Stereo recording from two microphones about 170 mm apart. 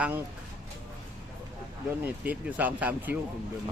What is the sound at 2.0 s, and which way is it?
Speech, 10° right (ahead or behind).